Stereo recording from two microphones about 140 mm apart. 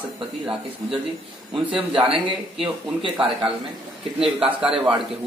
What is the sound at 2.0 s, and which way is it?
Speech, 40° right (ahead or behind).